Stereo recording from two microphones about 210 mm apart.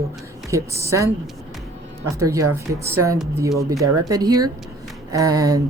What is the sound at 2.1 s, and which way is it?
Speech, 15° right (ahead or behind).